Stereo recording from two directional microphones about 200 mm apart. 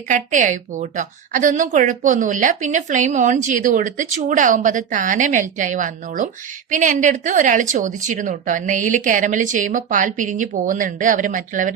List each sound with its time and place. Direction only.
0.1 s a woman's voice: 40° right (ahead or behind)